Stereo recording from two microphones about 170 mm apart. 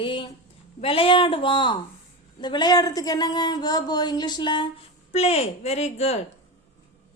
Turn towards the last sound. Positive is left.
turn(degrees=40)  # may be behind; listen again after turning